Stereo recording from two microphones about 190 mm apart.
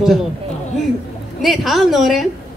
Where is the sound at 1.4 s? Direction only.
Centre (ahead or behind).